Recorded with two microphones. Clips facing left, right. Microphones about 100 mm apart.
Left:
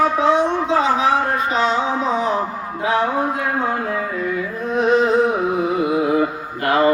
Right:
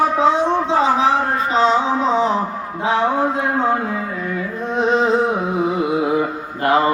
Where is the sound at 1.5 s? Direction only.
30° right (ahead or behind).